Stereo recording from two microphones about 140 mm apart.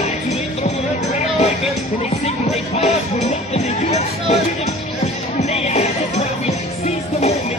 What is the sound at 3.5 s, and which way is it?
Music, 50° left (ahead or behind).